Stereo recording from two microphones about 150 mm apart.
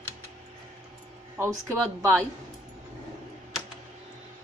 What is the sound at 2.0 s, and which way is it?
Speech, 15° right (ahead or behind).